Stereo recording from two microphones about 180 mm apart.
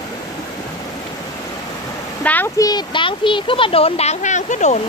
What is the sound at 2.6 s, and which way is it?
A child's voice, 25° left (ahead or behind).